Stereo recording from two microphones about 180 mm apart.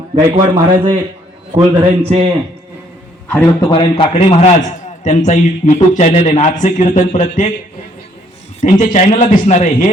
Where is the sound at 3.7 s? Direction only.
25° left (ahead or behind); by 7.5 s 45° left (ahead or behind).